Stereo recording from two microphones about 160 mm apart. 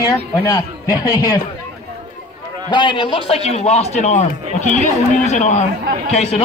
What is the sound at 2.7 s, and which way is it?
A man's voice, 30° left (ahead or behind).